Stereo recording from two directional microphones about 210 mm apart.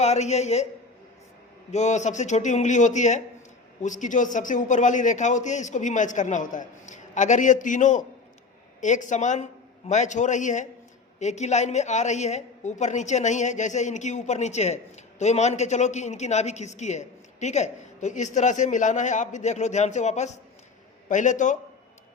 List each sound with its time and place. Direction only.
0.0 s a woman's voice: 30° left (ahead or behind)
1.7 s a woman's voice: 35° left (ahead or behind)